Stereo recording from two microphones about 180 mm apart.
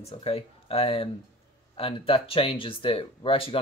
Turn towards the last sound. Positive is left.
turn(degrees=30)  # may be behind; listen again after turning